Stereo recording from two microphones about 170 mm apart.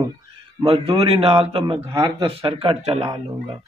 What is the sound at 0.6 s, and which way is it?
Speech, 35° right (ahead or behind).